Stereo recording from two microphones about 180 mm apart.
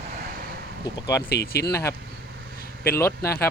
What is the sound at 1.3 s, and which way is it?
Speech, 65° left (ahead or behind).